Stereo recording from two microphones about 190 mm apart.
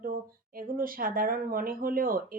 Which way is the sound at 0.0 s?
50° right (ahead or behind).